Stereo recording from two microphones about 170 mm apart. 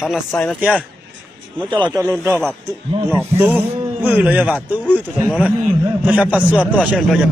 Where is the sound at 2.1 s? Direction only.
15° right (ahead or behind).